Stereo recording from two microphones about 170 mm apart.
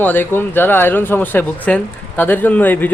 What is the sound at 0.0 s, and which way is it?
Speech, 10° left (ahead or behind).